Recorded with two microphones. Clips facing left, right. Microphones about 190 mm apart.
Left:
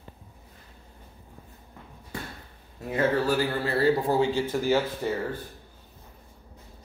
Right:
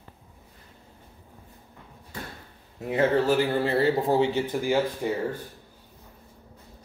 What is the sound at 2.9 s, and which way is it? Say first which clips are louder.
Speech: right 2 dB; 20° right (ahead or behind).